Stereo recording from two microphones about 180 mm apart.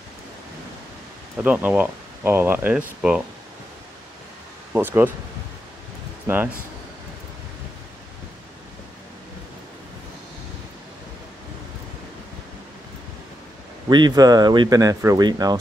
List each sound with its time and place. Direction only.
1.4 s speech: 10° right (ahead or behind)
4.7 s speech: 10° right (ahead or behind)
6.2 s speech: 10° right (ahead or behind)
13.8 s speech: 25° right (ahead or behind)